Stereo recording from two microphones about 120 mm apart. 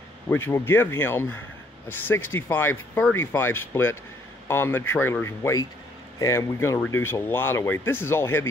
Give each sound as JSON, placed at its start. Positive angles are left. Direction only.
{"t": 0.3, "sound": "speech", "side_deg": 20}